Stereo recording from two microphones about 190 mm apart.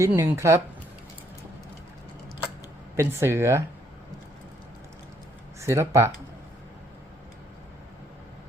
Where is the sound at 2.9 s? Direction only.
15° right (ahead or behind).